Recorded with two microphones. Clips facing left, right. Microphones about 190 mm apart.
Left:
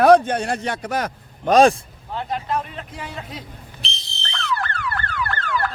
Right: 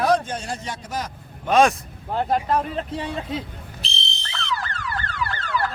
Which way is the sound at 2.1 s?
45° right (ahead or behind).